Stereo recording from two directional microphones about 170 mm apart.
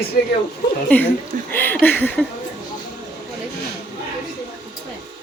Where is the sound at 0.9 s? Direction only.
10° left (ahead or behind).